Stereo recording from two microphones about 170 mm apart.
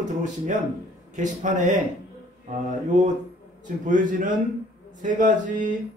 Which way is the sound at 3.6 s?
50° right (ahead or behind).